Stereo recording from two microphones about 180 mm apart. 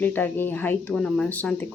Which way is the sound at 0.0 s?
10° left (ahead or behind).